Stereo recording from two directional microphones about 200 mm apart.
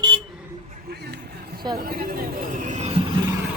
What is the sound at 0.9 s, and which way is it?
Vehicle, 55° right (ahead or behind).